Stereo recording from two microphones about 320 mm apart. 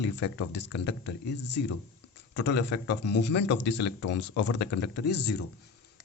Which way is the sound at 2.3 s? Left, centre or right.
Left.